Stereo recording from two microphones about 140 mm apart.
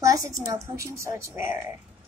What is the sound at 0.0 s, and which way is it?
A woman's voice, 20° right (ahead or behind).